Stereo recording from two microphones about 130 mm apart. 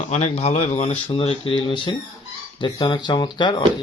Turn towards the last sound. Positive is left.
turn(degrees=35)  # may be behind; listen again after turning